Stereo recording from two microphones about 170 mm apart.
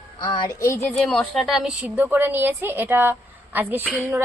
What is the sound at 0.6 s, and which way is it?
Speech, 15° left (ahead or behind).